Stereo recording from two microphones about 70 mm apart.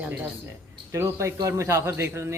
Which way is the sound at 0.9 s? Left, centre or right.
Right.